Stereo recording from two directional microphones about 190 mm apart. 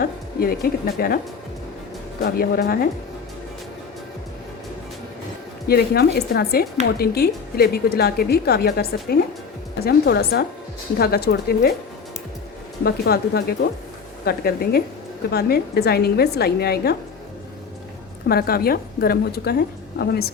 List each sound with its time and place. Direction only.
0.0 s a woman's voice: 50° left (ahead or behind)
2.2 s speech: 50° left (ahead or behind)
5.6 s a woman's voice: 55° left (ahead or behind)
12.8 s a woman's voice: 55° left (ahead or behind)
18.3 s a woman's voice: 55° left (ahead or behind)